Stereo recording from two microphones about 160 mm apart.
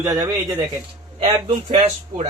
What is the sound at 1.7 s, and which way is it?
Speech, 40° right (ahead or behind).